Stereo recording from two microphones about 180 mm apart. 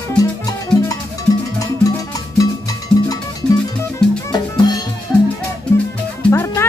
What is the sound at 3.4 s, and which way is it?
Music, 5° left (ahead or behind).